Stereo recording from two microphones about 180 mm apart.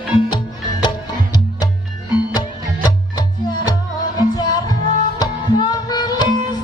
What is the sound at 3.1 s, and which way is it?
Music, 25° left (ahead or behind).